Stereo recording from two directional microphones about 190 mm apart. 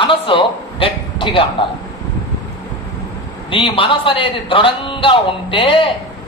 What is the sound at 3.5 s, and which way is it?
A woman's voice, 25° left (ahead or behind).